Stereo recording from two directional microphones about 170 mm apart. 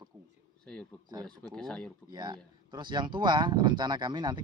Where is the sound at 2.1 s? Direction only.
25° right (ahead or behind).